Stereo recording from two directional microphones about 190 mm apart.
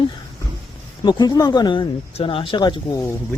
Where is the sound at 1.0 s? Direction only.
20° left (ahead or behind).